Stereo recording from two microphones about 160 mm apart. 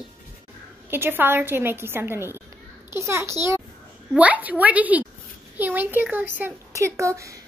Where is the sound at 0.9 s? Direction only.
15° right (ahead or behind).